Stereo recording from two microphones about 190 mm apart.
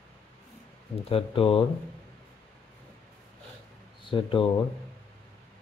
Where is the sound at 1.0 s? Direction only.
30° left (ahead or behind).